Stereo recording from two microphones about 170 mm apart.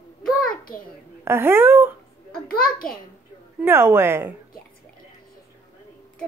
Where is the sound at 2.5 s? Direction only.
60° left (ahead or behind).